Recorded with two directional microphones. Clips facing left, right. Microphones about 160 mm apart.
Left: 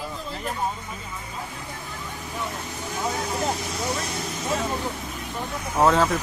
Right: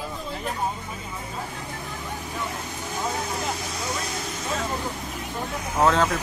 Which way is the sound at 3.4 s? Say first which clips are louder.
Left 3 dB; 30° left (ahead or behind).